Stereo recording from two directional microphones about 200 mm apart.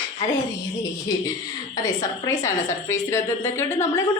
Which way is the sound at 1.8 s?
15° left (ahead or behind).